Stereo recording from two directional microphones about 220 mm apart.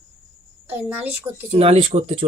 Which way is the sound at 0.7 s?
10° right (ahead or behind).